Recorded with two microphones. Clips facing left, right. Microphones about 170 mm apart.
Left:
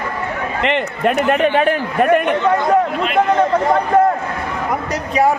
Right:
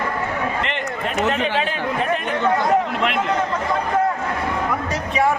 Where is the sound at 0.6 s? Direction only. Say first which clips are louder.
Left 8 dB; 60° left (ahead or behind).